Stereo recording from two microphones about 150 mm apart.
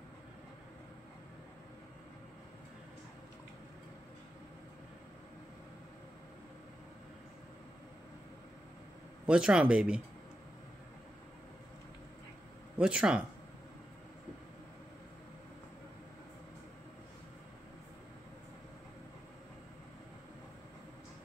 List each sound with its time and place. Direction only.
9.2 s speech: 5° right (ahead or behind)
12.7 s speech: 5° right (ahead or behind)